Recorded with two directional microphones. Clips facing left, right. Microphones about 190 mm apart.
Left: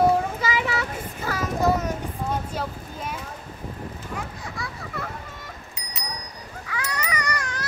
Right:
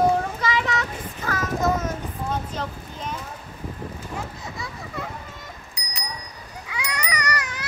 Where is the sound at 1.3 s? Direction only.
10° left (ahead or behind).